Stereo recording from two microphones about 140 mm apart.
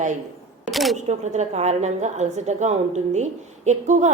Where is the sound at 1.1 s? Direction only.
55° right (ahead or behind).